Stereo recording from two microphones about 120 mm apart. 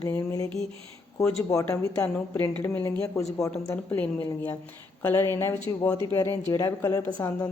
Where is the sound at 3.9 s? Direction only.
15° left (ahead or behind).